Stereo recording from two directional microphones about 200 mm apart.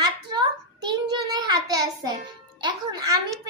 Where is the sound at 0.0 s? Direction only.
20° right (ahead or behind).